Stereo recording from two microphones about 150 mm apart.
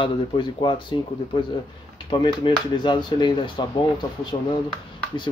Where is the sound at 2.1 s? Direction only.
30° left (ahead or behind).